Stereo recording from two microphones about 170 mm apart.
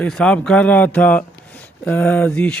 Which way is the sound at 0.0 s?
5° left (ahead or behind).